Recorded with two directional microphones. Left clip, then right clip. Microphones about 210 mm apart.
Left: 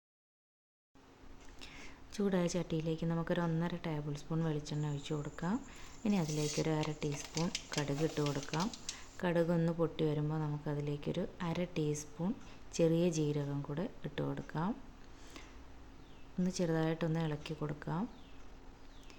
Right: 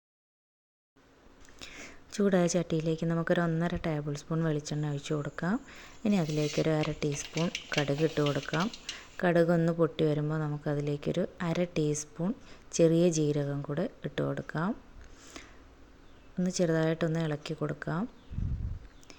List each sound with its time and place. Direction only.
1.5 s a woman's voice: 25° right (ahead or behind)
16.4 s a woman's voice: 20° right (ahead or behind)